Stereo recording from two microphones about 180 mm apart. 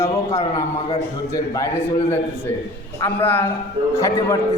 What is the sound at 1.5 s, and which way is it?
A man's voice, 15° left (ahead or behind).